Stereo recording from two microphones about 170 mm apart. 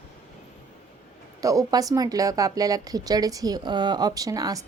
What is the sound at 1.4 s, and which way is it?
Speech, 20° right (ahead or behind).